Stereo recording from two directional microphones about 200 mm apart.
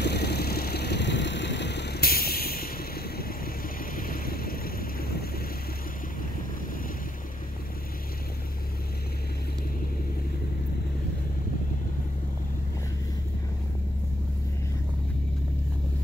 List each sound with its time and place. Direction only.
0.0 s vehicle: 55° left (ahead or behind)